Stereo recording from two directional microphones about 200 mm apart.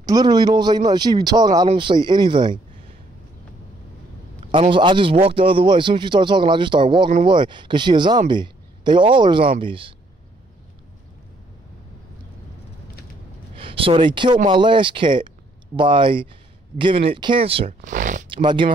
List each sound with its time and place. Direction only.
0.0 s a man's voice: 20° right (ahead or behind)
4.5 s a man's voice: 25° right (ahead or behind)
13.6 s a man's voice: 25° right (ahead or behind)
17.8 s zipper: 40° right (ahead or behind)
18.3 s a man's voice: 25° right (ahead or behind)